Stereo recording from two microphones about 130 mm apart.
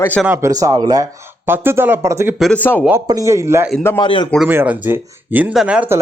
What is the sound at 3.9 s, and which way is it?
Speech, 40° left (ahead or behind).